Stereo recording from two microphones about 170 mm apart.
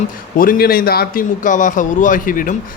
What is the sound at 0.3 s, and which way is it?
A man's voice, 55° left (ahead or behind).